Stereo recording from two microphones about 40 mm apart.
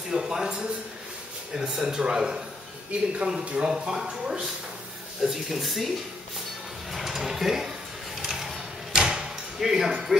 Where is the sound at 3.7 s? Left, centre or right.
Centre.